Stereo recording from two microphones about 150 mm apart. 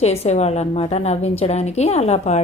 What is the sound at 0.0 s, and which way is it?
Speech, 45° left (ahead or behind).